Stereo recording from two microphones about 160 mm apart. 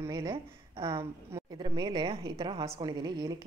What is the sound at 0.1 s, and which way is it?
A woman's voice, 30° right (ahead or behind).